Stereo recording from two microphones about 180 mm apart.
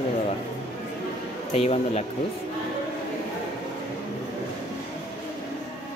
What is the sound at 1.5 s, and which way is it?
Speech, 35° left (ahead or behind).